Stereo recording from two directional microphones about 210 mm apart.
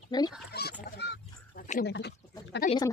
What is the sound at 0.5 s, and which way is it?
Pig, 50° left (ahead or behind).